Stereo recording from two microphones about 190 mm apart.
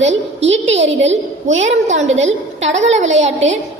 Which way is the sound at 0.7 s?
35° right (ahead or behind).